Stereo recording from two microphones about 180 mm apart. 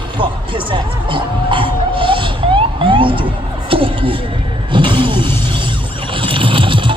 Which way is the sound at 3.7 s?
30° right (ahead or behind).